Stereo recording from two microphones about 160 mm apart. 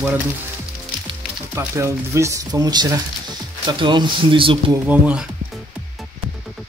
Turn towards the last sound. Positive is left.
turn(degrees=-10)  # may be behind; listen again after turning